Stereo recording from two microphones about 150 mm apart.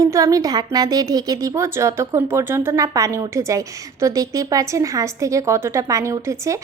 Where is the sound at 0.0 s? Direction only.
20° right (ahead or behind).